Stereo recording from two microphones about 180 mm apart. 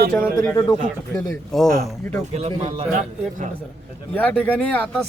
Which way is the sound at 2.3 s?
35° right (ahead or behind).